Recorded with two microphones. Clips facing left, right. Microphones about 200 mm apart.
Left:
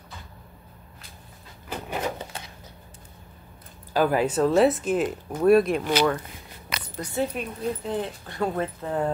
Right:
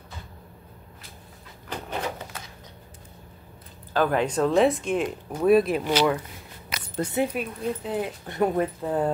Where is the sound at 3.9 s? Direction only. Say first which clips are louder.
Left 1 dB; 10° left (ahead or behind).